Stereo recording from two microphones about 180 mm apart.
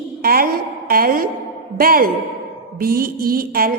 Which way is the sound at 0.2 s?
55° right (ahead or behind).